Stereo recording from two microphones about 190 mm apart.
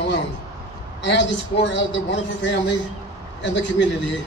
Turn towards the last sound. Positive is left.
turn(degrees=70)  # may be behind; listen again after turning